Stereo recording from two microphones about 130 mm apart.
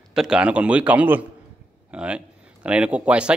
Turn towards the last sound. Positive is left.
turn(degrees=-10)  # may be behind; listen again after turning